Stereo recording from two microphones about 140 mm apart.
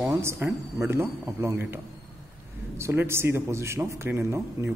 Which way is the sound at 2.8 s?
15° right (ahead or behind).